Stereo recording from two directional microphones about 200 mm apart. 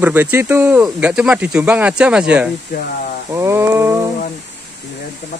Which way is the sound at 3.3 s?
15° right (ahead or behind).